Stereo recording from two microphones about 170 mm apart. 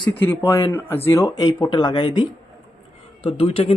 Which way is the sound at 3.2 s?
35° left (ahead or behind).